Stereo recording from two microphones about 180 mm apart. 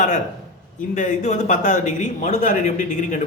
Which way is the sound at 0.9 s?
40° left (ahead or behind).